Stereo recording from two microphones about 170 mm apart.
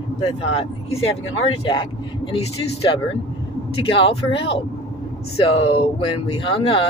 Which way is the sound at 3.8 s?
35° left (ahead or behind).